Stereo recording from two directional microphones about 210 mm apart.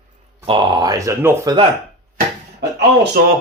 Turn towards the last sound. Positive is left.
turn(degrees=-50)  # may be behind; listen again after turning